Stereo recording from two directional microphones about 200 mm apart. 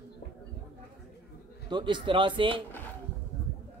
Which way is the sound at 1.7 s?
25° right (ahead or behind).